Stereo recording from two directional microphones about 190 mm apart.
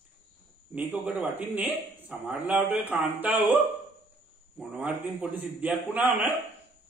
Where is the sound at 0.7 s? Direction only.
10° right (ahead or behind).